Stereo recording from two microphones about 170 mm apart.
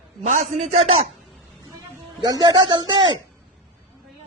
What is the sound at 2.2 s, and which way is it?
Speech, 25° right (ahead or behind).